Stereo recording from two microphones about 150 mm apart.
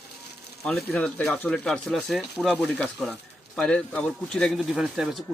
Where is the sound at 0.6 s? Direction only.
Centre (ahead or behind).